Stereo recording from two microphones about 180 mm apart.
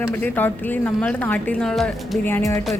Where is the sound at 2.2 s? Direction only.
15° left (ahead or behind).